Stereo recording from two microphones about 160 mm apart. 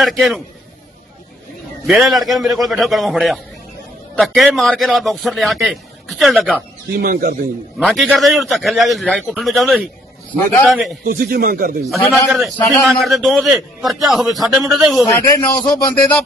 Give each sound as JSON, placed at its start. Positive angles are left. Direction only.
{"t": 0.0, "sound": "a man's voice", "side_deg": 0}
{"t": 1.9, "sound": "a man's voice", "side_deg": 0}
{"t": 7.0, "sound": "speech", "side_deg": -65}
{"t": 7.8, "sound": "a man's voice", "side_deg": 0}
{"t": 11.1, "sound": "speech", "side_deg": -65}
{"t": 12.3, "sound": "a man's voice", "side_deg": 0}
{"t": 15.0, "sound": "a man's voice", "side_deg": 20}